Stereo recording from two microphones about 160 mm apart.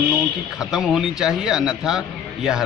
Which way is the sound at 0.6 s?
5° right (ahead or behind).